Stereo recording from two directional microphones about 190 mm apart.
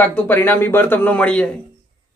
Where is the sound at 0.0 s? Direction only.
10° left (ahead or behind).